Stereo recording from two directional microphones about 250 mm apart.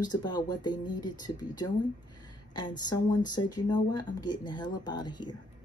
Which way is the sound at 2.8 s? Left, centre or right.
Centre.